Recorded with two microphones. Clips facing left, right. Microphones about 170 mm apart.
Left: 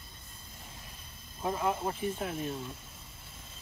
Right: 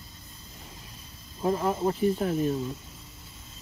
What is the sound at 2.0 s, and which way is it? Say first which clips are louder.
Speech: right 9 dB; 35° right (ahead or behind).